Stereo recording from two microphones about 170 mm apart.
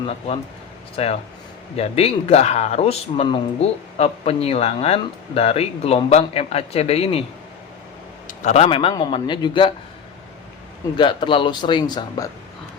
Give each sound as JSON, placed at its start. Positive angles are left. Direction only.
{"t": 1.0, "sound": "speech", "side_deg": 35}
{"t": 8.3, "sound": "speech", "side_deg": 45}
{"t": 10.9, "sound": "speech", "side_deg": 30}